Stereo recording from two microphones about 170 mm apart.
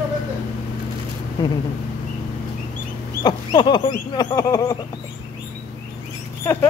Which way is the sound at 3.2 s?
30° left (ahead or behind).